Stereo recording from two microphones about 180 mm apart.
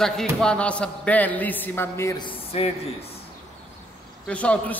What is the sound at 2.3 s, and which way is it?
Speech, 35° left (ahead or behind).